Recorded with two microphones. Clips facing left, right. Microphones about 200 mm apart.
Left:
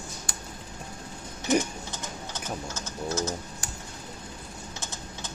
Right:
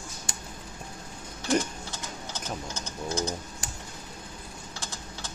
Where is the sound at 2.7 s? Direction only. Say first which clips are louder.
Left 1 dB; 15° right (ahead or behind).